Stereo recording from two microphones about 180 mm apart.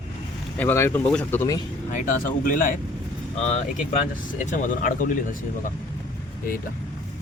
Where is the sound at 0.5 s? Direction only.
10° left (ahead or behind).